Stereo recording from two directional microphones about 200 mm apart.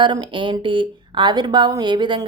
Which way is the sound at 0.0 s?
25° right (ahead or behind).